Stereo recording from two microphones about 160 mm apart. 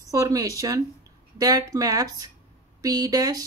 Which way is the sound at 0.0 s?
20° right (ahead or behind).